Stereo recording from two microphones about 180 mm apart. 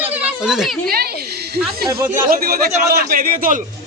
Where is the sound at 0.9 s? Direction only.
60° right (ahead or behind).